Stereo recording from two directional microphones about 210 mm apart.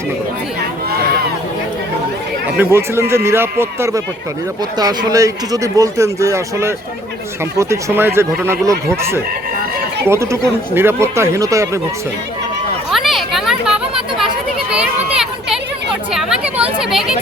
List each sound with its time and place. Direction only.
2.6 s speech: 10° right (ahead or behind)
12.9 s children playing: centre (ahead or behind)
14.7 s a sound: 5° right (ahead or behind)
16.1 s chatter: 5° right (ahead or behind)
16.9 s speech: centre (ahead or behind)